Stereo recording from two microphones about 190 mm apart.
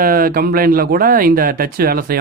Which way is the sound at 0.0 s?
50° right (ahead or behind).